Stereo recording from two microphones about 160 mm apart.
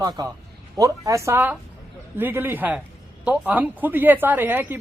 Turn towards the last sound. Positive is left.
turn(degrees=-15)  # may be behind; listen again after turning